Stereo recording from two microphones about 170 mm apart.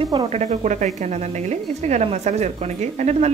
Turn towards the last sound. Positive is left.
turn(degrees=-40)  # may be behind; listen again after turning